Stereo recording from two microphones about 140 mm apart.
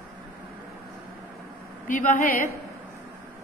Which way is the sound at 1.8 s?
65° left (ahead or behind).